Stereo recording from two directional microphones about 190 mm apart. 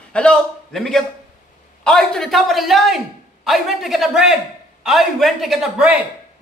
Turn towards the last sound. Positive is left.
turn(degrees=-5)  # may be behind; listen again after turning